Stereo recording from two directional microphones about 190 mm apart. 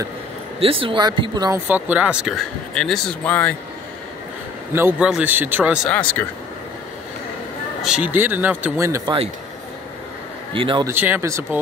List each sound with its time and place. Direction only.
0.6 s speech: 30° right (ahead or behind)
1.7 s speech: 10° right (ahead or behind); by 3.5 s 5° left (ahead or behind)
4.7 s speech: 10° right (ahead or behind)
5.9 s speech: 5° left (ahead or behind)
7.8 s speech: 5° right (ahead or behind)
10.5 s speech: 25° right (ahead or behind)
10.9 s speech: 10° right (ahead or behind)